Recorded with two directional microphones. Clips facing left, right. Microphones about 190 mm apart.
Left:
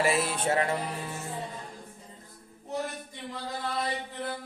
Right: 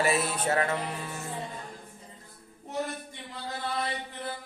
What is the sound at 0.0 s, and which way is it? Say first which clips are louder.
Music: even; 25° left (ahead or behind).